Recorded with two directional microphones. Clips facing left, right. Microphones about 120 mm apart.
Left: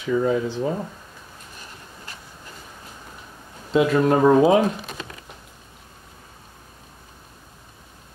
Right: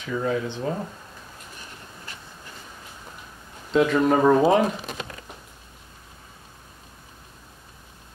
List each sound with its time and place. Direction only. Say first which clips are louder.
0.0 s speech: left 5 dB; 10° left (ahead or behind)
3.7 s speech: left 1 dB; 5° left (ahead or behind)